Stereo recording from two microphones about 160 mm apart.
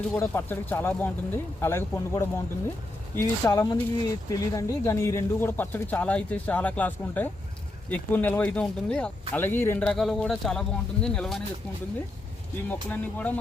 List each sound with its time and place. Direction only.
0.2 s speech: 15° left (ahead or behind)
12.6 s speech: 10° left (ahead or behind)